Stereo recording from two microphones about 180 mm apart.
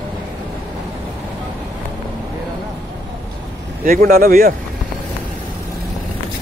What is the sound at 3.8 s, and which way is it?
Speech, 55° right (ahead or behind).